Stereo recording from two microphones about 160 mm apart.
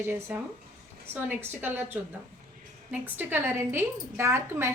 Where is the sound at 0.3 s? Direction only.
10° right (ahead or behind).